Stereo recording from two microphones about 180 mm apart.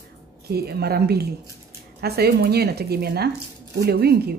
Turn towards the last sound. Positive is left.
turn(degrees=-60)  # may be behind; listen again after turning